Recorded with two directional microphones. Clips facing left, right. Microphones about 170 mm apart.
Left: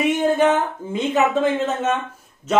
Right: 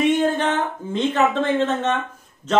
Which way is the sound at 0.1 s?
10° left (ahead or behind).